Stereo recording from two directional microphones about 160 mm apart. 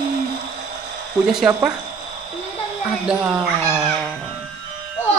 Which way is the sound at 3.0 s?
5° right (ahead or behind).